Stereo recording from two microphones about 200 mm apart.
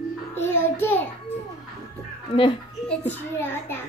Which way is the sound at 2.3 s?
25° left (ahead or behind).